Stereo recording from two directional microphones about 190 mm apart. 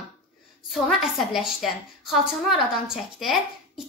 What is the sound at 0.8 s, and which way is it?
A woman's voice, centre (ahead or behind).